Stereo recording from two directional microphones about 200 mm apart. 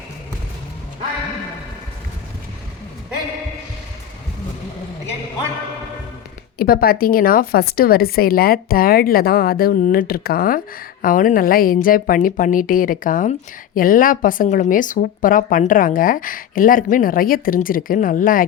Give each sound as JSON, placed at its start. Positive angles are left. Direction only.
{"t": 6.6, "sound": "speech", "side_deg": 50}